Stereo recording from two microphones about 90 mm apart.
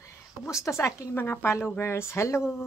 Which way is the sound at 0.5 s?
35° left (ahead or behind).